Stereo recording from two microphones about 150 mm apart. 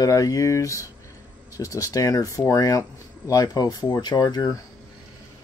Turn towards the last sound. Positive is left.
turn(degrees=25)  # may be behind; listen again after turning